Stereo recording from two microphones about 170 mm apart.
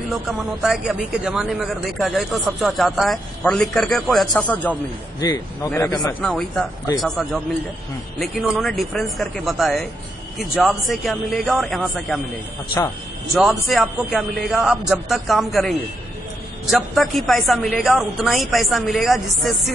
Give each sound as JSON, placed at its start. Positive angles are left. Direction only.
{"t": 0.1, "sound": "a man's voice", "side_deg": -5}
{"t": 6.2, "sound": "a man's voice", "side_deg": 5}
{"t": 13.3, "sound": "a man's voice", "side_deg": 0}
{"t": 16.7, "sound": "a man's voice", "side_deg": 0}